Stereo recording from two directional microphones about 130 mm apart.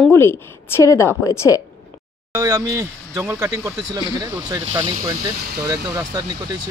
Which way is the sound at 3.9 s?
30° right (ahead or behind).